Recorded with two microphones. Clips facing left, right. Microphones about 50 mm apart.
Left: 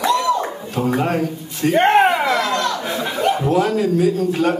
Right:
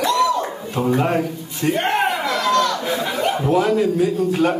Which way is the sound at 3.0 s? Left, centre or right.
Centre.